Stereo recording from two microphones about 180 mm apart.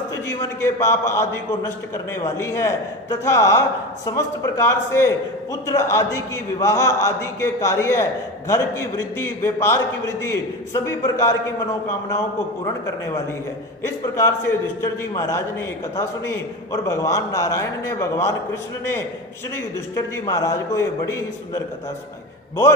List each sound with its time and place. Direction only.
0.3 s a man's voice: 15° left (ahead or behind)
13.8 s a man's voice: 15° left (ahead or behind)
19.5 s a man's voice: 20° left (ahead or behind)